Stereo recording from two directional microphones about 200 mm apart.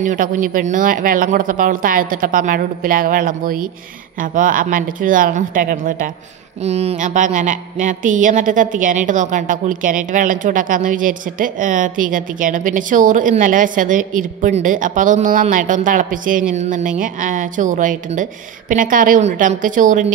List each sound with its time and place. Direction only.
0.0 s speech: 40° right (ahead or behind)
6.6 s a woman's voice: 30° right (ahead or behind)